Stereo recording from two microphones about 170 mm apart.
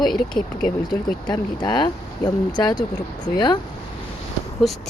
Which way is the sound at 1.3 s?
25° left (ahead or behind).